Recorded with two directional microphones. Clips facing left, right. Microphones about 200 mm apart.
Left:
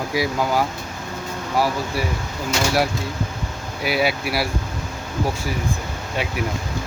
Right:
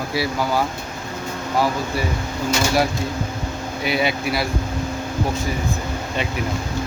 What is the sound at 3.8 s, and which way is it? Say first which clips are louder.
Speech: even; 5° left (ahead or behind).